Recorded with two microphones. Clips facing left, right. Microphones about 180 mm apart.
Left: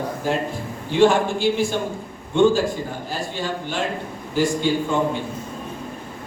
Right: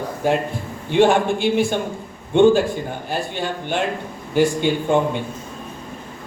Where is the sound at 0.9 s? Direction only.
60° right (ahead or behind).